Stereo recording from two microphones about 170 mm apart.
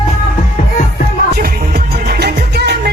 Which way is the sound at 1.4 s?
65° right (ahead or behind).